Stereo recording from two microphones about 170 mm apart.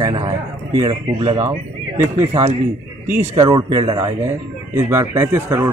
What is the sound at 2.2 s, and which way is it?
Speech, 45° right (ahead or behind).